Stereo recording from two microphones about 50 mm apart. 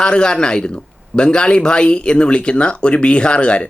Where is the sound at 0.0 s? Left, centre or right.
Centre.